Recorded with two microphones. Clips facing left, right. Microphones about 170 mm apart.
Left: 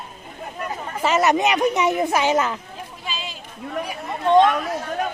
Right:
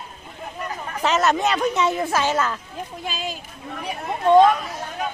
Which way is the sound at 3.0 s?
50° right (ahead or behind).